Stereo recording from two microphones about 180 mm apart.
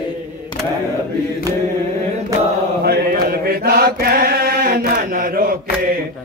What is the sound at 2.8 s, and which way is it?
Chant, 60° right (ahead or behind).